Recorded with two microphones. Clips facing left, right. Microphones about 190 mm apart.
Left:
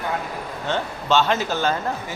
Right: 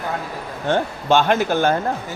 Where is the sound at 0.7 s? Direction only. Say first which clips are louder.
Right 4 dB; 50° right (ahead or behind).